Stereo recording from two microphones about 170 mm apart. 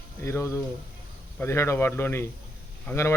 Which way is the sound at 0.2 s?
15° left (ahead or behind).